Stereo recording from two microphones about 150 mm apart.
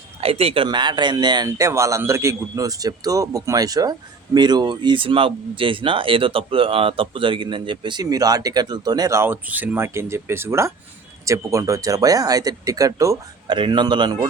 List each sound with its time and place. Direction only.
0.2 s speech: 40° right (ahead or behind)